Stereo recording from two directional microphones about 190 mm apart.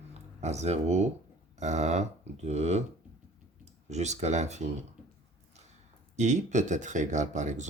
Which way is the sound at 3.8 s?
35° right (ahead or behind).